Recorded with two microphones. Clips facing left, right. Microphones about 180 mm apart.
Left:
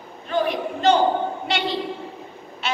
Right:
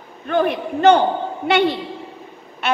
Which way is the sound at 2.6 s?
60° right (ahead or behind).